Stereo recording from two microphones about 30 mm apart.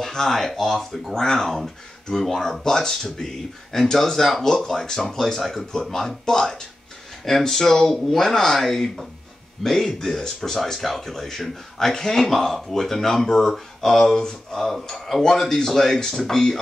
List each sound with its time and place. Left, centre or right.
0.1 s speech: centre